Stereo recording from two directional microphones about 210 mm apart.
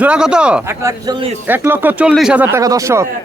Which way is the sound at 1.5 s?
10° right (ahead or behind).